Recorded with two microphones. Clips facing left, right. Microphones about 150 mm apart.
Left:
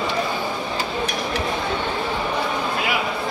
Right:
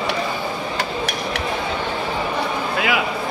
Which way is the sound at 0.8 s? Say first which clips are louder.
Right 1 dB; 80° right.